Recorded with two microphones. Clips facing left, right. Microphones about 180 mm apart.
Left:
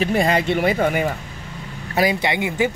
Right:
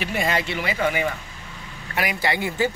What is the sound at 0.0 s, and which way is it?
Speech, 35° left (ahead or behind).